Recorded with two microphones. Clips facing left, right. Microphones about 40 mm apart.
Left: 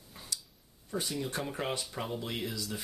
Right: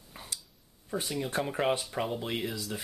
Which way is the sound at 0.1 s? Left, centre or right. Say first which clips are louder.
Even; right.